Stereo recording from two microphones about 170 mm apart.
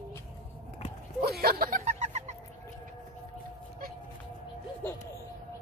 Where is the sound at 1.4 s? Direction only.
65° right (ahead or behind).